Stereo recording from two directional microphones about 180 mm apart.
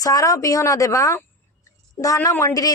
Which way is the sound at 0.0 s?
20° left (ahead or behind).